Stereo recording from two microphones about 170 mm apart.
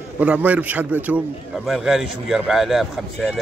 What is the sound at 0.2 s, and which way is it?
A man's voice, 10° right (ahead or behind).